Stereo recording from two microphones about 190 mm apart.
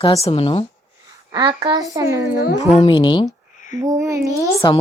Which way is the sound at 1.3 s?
25° right (ahead or behind).